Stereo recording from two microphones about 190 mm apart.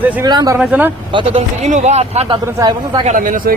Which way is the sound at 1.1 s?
30° right (ahead or behind).